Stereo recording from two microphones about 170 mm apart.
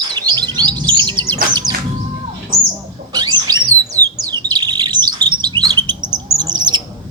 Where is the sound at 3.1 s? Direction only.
25° right (ahead or behind).